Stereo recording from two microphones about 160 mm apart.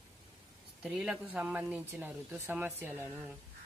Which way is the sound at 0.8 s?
5° right (ahead or behind).